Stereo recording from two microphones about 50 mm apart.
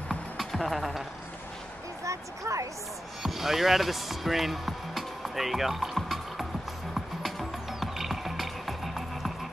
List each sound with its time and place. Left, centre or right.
0.4 s music: centre
2.0 s a sound: right
3.2 s music: centre